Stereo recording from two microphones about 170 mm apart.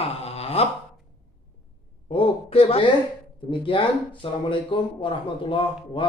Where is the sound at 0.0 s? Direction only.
35° left (ahead or behind).